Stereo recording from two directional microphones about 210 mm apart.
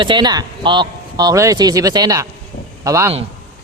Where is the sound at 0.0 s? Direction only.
20° right (ahead or behind).